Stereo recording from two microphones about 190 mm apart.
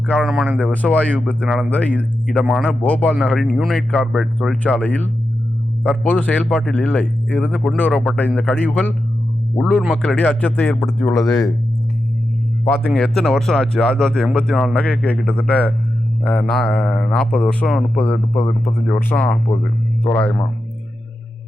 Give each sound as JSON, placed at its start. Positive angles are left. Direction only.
{"t": 0.1, "sound": "speech", "side_deg": 0}
{"t": 0.6, "sound": "speech", "side_deg": 10}
{"t": 2.4, "sound": "speech", "side_deg": -5}
{"t": 2.6, "sound": "speech", "side_deg": 10}
{"t": 6.5, "sound": "speech", "side_deg": 0}
{"t": 6.7, "sound": "speech", "side_deg": 10}
{"t": 11.3, "sound": "speech", "side_deg": 20}
{"t": 12.6, "sound": "speech", "side_deg": 5}